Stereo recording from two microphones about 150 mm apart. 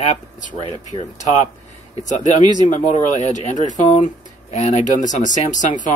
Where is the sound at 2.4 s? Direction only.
30° right (ahead or behind).